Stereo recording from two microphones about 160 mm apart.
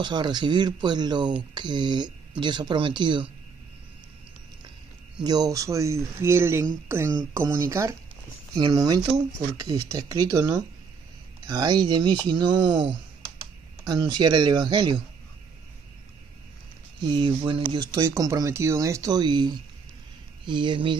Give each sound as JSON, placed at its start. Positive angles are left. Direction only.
{"t": 0.0, "sound": "speech", "side_deg": -25}
{"t": 5.2, "sound": "speech", "side_deg": -25}
{"t": 8.5, "sound": "speech", "side_deg": -25}
{"t": 17.0, "sound": "speech", "side_deg": -30}